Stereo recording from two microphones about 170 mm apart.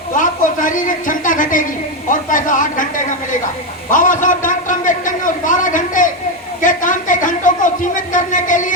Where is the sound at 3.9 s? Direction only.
50° left (ahead or behind).